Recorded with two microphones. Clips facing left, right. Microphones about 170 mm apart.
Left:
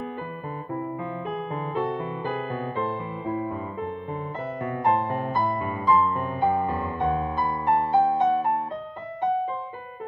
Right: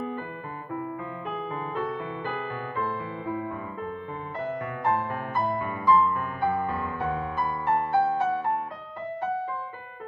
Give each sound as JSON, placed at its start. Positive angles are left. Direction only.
{"t": 1.8, "sound": "music", "side_deg": 25}